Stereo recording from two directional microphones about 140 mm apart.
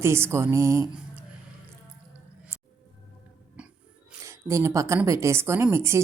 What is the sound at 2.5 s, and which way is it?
Music, 15° right (ahead or behind).